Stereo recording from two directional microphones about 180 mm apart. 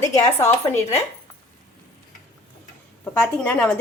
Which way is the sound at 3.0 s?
10° left (ahead or behind).